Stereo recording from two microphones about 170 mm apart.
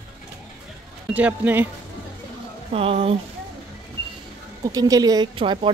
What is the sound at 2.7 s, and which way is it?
Speech, 35° right (ahead or behind).